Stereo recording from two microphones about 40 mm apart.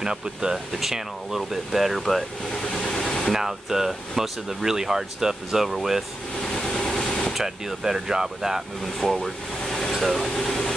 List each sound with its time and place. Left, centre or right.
0.0 s speech: centre
2.0 s speech: centre
2.8 s vehicle: centre
3.3 s speech: centre
6.4 s vehicle: centre
7.3 s speech: centre
9.0 s speech: centre
9.6 s vehicle: centre
9.9 s speech: centre
10.3 s speech: centre